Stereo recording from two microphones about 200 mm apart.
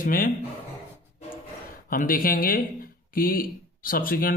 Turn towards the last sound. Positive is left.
turn(degrees=45)  # may be behind; listen again after turning